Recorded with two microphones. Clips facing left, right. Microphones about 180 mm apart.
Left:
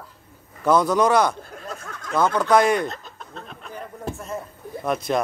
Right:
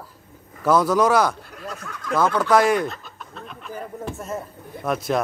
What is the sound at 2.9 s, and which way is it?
Chicken, 35° left (ahead or behind).